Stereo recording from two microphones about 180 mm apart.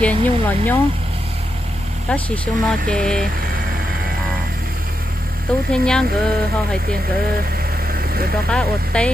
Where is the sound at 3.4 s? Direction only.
55° right (ahead or behind).